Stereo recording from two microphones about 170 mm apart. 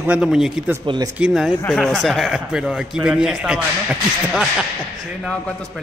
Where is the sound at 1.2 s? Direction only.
Centre (ahead or behind).